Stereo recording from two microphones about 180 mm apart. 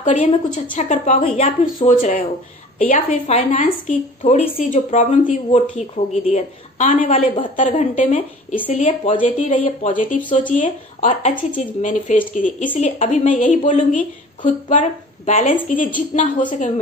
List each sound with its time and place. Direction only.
0.0 s a woman's voice: 40° left (ahead or behind)
4.2 s a woman's voice: 30° left (ahead or behind)